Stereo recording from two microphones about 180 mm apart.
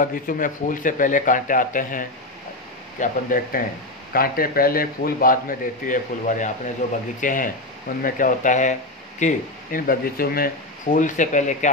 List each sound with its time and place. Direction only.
0.0 s speech: 50° left (ahead or behind)